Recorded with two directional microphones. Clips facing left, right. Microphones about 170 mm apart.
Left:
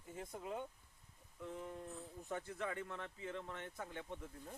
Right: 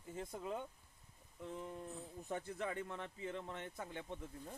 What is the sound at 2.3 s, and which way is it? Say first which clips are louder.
A man's voice: right 1 dB; 25° right (ahead or behind).